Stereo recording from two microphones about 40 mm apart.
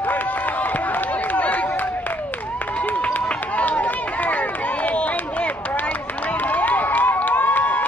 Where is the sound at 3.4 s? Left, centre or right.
Left.